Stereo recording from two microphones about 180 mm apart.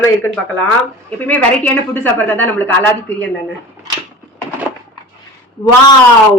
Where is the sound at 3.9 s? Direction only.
25° right (ahead or behind).